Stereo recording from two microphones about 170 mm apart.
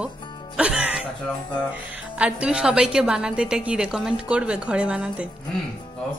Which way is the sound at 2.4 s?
5° right (ahead or behind).